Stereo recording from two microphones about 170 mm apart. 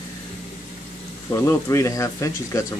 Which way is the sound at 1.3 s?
15° left (ahead or behind).